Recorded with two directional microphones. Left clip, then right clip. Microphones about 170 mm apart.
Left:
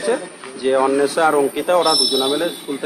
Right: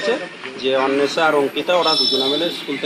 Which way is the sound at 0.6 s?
20° left (ahead or behind).